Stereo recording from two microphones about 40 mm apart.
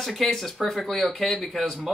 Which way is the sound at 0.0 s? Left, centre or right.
Centre.